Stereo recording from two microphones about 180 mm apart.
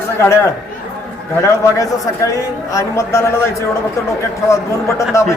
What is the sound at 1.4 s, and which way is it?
A man's voice, 20° left (ahead or behind).